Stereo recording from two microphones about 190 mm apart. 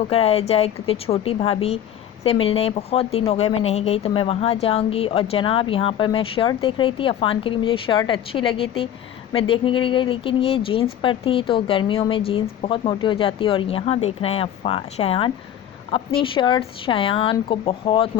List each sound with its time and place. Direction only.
0.0 s a woman's voice: 30° left (ahead or behind)